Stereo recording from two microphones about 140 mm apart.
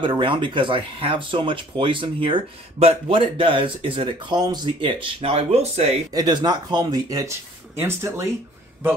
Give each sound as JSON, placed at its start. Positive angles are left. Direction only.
{"t": 0.0, "sound": "speech", "side_deg": -35}
{"t": 6.1, "sound": "speech", "side_deg": -30}